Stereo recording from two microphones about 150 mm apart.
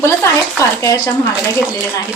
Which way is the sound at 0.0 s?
20° left (ahead or behind).